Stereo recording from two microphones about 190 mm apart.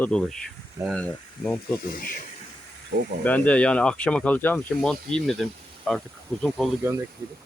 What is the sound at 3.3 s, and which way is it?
Speech, 5° left (ahead or behind).